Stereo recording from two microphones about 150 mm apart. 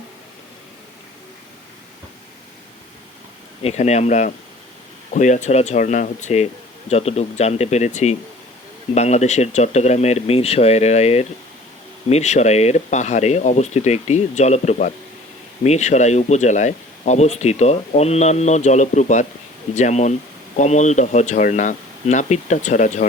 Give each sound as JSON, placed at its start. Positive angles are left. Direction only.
{"t": 3.6, "sound": "speech", "side_deg": 45}